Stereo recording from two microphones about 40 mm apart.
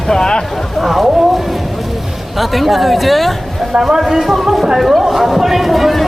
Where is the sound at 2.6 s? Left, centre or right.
Centre.